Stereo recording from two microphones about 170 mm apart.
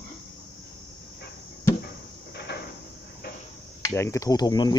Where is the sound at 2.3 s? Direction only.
70° left (ahead or behind).